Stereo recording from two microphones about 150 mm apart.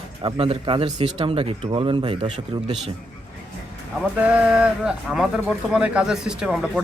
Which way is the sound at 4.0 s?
10° right (ahead or behind).